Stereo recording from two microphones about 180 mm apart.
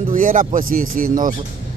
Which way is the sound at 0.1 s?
45° right (ahead or behind).